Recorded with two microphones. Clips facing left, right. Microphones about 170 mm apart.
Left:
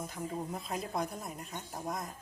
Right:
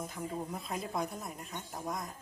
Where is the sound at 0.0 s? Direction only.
Centre (ahead or behind).